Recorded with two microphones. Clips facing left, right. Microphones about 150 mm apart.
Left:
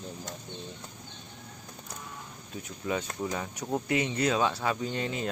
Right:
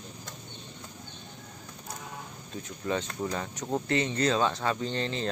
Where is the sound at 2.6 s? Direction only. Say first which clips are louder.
Right 1 dB; 10° left (ahead or behind).